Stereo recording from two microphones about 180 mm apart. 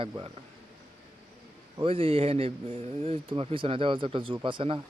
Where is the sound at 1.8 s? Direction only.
30° right (ahead or behind).